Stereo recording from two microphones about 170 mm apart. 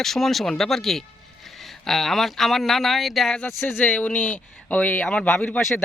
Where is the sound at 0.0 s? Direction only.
Centre (ahead or behind).